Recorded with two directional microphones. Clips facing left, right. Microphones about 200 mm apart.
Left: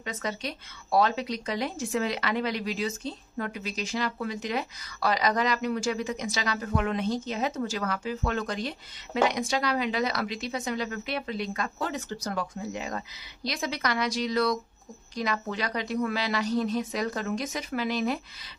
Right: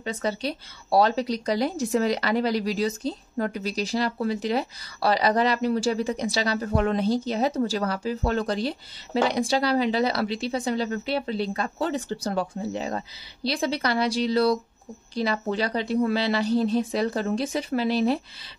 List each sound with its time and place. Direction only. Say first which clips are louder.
0.0 s a woman's voice: right 6 dB; 30° right (ahead or behind)